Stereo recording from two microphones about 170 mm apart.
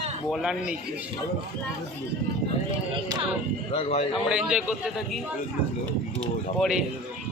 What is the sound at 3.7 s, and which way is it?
Speech, 35° left (ahead or behind).